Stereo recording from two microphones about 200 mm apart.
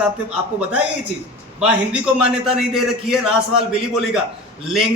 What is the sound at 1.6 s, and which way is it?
A man's voice, 5° right (ahead or behind).